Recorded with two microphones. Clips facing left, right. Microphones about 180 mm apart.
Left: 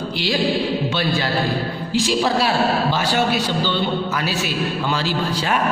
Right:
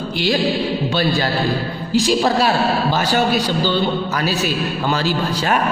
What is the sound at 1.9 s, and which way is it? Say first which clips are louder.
A man's voice: right 3 dB; 40° right (ahead or behind).